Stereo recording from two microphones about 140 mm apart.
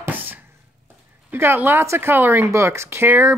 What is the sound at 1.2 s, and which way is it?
Speech, 15° right (ahead or behind).